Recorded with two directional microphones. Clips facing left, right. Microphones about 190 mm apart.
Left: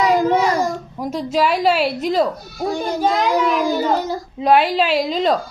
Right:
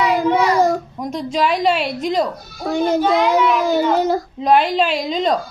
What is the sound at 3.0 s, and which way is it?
Speech, 40° left (ahead or behind).